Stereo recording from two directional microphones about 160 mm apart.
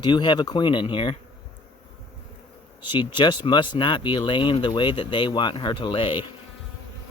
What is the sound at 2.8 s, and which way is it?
Speech, 30° left (ahead or behind).